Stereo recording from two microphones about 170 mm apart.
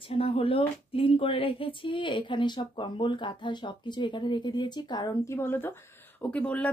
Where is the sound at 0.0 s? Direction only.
30° left (ahead or behind).